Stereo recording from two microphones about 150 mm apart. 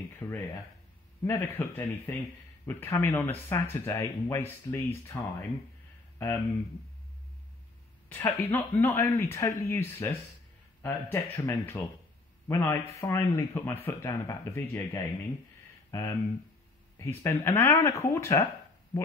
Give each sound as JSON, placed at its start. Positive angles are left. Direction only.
{"t": 0.2, "sound": "speech", "side_deg": 15}
{"t": 8.1, "sound": "a man's voice", "side_deg": 15}